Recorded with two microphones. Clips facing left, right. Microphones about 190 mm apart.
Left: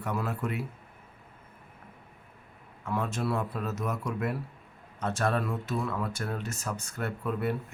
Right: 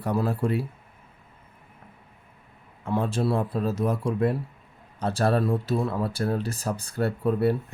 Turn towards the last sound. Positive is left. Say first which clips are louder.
# right 8 dB
turn(degrees=-35)  # may be behind; listen again after turning